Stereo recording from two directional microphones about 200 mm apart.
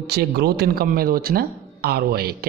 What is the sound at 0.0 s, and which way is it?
Speech, 55° right (ahead or behind).